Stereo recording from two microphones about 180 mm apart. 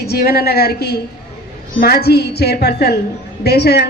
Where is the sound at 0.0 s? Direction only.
60° left (ahead or behind).